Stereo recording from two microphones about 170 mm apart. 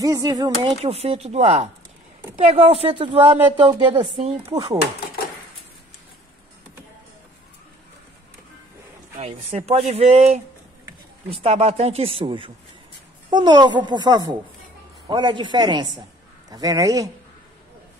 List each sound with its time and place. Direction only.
0.0 s speech: 20° right (ahead or behind)
0.8 s a woman's voice: 40° right (ahead or behind)
9.2 s a woman's voice: 35° right (ahead or behind); by 17.1 s 20° right (ahead or behind)